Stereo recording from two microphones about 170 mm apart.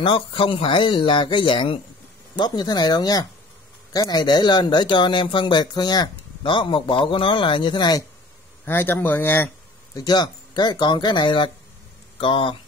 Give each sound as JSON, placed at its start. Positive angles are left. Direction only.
{"t": 0.0, "sound": "speech", "side_deg": 30}
{"t": 8.6, "sound": "speech", "side_deg": 15}
{"t": 9.9, "sound": "speech", "side_deg": 25}